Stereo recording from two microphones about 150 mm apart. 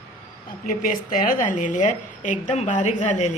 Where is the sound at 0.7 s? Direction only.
65° left (ahead or behind).